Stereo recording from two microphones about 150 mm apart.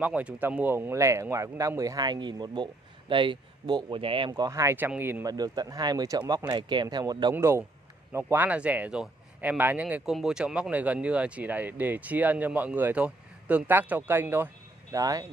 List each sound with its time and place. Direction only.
0.0 s speech: 10° right (ahead or behind)
5.2 s speech: 25° right (ahead or behind)
7.3 s speech: 15° right (ahead or behind)